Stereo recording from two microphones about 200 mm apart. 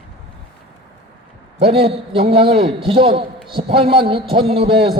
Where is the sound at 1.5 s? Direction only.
30° right (ahead or behind).